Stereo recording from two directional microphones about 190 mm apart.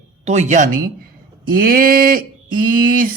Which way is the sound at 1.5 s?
50° right (ahead or behind).